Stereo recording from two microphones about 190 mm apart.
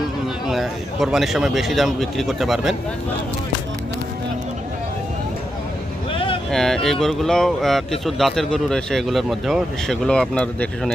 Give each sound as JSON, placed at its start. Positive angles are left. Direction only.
{"t": 0.4, "sound": "speech", "side_deg": 0}
{"t": 6.1, "sound": "vehicle", "side_deg": 30}
{"t": 6.5, "sound": "speech", "side_deg": 0}